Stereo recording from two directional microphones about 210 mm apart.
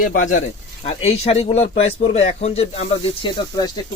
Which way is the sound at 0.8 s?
30° left (ahead or behind).